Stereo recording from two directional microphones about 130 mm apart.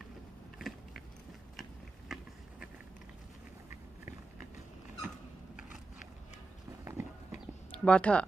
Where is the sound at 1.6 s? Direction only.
Centre (ahead or behind).